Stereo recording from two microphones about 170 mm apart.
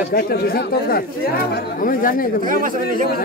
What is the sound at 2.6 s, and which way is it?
Speech, 55° right (ahead or behind).